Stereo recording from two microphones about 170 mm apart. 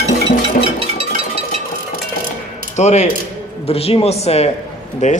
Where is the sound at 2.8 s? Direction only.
40° left (ahead or behind).